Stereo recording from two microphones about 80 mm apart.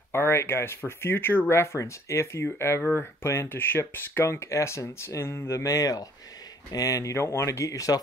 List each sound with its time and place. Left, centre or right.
0.1 s speech: left